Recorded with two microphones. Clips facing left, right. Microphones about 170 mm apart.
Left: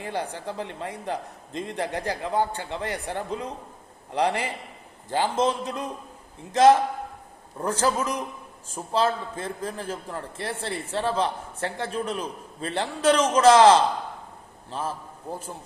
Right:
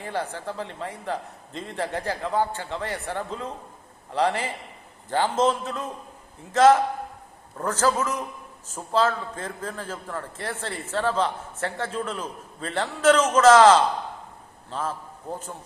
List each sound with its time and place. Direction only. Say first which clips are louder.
0.0 s a man's voice: even; 15° left (ahead or behind)